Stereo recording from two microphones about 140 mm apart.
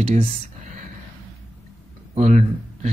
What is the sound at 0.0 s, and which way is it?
Speech, 45° right (ahead or behind).